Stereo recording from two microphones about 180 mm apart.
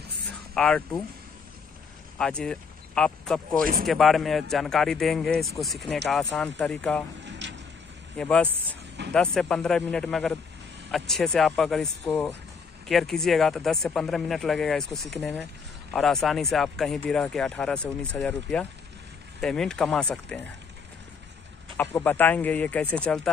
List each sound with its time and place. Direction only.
0.6 s speech: 5° left (ahead or behind)
2.1 s speech: 5° left (ahead or behind)
7.2 s a sound: 80° right
8.2 s speech: 5° left (ahead or behind)
21.7 s speech: 10° left (ahead or behind)